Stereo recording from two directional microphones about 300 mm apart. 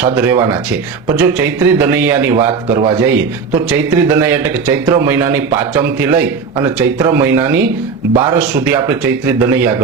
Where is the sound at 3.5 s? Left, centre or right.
Centre.